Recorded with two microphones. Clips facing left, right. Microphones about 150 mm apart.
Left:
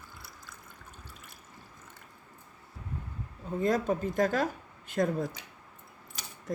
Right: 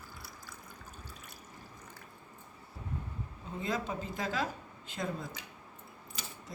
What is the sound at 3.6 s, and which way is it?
Speech, 45° left (ahead or behind).